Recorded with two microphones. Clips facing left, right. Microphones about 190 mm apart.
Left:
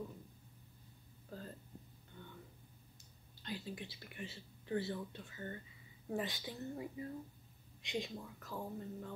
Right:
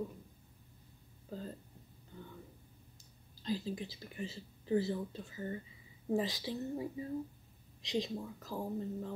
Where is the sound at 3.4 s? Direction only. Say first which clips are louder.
Right 8 dB; 35° right (ahead or behind).